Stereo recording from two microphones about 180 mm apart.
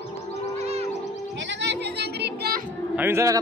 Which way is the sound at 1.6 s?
70° right (ahead or behind).